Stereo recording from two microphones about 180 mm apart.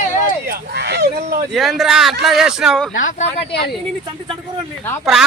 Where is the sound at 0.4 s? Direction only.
65° right (ahead or behind).